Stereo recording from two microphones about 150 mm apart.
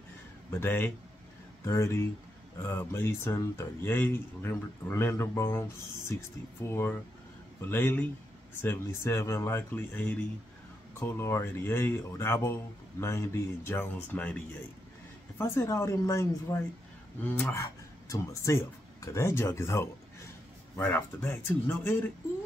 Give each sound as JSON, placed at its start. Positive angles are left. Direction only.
{"t": 0.5, "sound": "speech", "side_deg": 15}
{"t": 15.3, "sound": "speech", "side_deg": 15}